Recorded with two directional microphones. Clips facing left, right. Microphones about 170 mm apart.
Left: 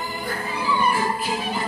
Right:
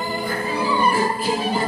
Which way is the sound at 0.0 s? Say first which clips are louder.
Right 4 dB; 35° right (ahead or behind).